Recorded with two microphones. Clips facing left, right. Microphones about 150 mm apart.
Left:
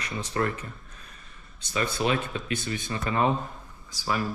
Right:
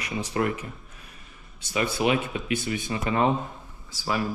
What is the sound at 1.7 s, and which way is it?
Speech, 15° right (ahead or behind).